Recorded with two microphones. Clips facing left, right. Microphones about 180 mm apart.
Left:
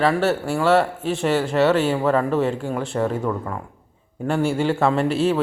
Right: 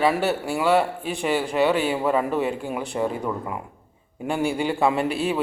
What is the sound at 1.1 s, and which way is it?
A man's voice, 15° right (ahead or behind).